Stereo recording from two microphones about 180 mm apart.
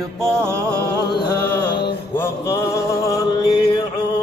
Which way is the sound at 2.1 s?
15° left (ahead or behind).